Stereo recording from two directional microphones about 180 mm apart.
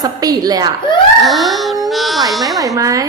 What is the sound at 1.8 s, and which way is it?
Speech, centre (ahead or behind).